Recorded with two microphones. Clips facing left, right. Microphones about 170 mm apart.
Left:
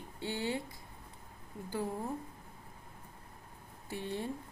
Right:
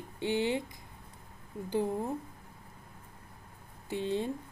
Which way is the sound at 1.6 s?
20° right (ahead or behind).